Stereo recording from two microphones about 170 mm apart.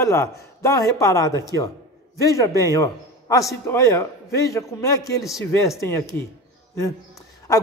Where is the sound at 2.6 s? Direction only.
20° left (ahead or behind).